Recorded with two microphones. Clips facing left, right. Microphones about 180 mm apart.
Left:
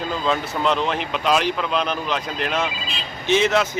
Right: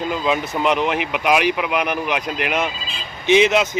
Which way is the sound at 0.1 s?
15° right (ahead or behind).